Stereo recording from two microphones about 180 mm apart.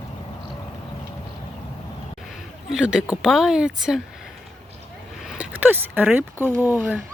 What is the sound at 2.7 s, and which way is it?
Speech, 5° right (ahead or behind).